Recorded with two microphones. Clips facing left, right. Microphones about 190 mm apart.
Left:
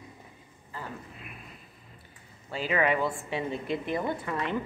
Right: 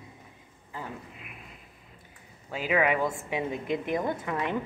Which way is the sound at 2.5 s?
10° right (ahead or behind).